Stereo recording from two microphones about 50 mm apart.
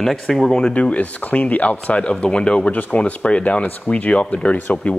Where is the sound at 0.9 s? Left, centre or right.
Left.